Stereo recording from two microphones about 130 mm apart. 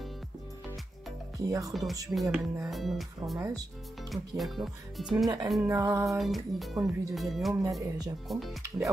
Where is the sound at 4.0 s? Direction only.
Centre (ahead or behind).